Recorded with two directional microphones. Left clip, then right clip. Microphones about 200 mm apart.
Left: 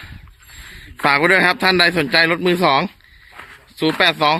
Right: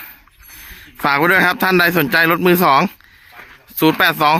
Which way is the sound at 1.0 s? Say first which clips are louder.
Even; 25° right (ahead or behind).